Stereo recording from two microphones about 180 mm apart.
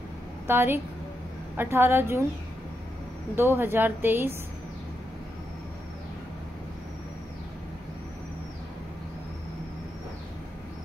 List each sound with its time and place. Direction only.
0.5 s a woman's voice: 10° right (ahead or behind)
3.3 s a woman's voice: 15° right (ahead or behind)